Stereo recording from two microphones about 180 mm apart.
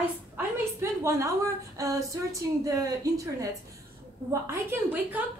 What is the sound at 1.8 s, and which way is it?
Speech, 15° right (ahead or behind).